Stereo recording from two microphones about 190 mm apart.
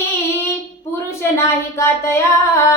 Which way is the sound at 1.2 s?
15° left (ahead or behind).